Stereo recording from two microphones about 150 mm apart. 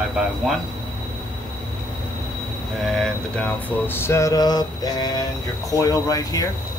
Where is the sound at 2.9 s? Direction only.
5° left (ahead or behind); by 6.4 s 20° left (ahead or behind).